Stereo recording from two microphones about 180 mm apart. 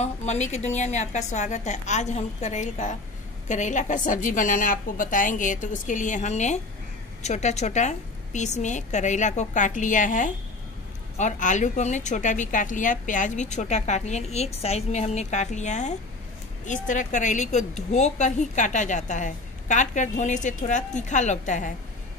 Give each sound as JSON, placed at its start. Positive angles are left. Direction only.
{"t": 0.0, "sound": "a woman's voice", "side_deg": 40}